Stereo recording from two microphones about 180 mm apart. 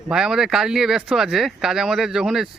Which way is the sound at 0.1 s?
5° right (ahead or behind).